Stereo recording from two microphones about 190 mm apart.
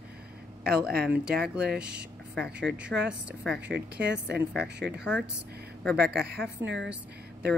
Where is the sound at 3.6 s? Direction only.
65° right (ahead or behind).